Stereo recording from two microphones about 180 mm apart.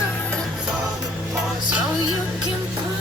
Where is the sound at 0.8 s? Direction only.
20° right (ahead or behind).